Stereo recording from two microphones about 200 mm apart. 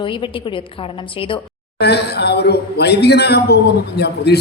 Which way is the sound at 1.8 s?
55° left (ahead or behind).